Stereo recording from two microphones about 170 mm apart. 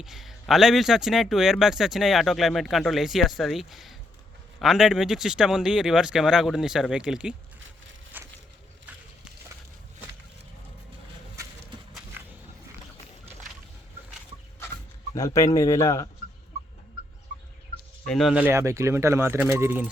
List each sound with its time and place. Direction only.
0.0 s speech: centre (ahead or behind)
8.1 s a sound: 10° right (ahead or behind)
15.1 s speech: 20° left (ahead or behind)
18.0 s speech: centre (ahead or behind)